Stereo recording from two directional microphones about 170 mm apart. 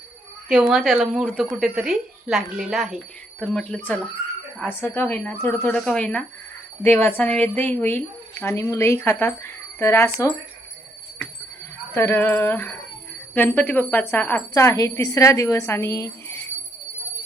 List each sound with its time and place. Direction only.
0.4 s a woman's voice: 5° right (ahead or behind); by 10.1 s 15° left (ahead or behind)
11.9 s speech: 15° left (ahead or behind)